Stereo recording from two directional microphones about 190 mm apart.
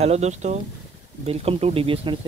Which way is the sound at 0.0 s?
35° right (ahead or behind).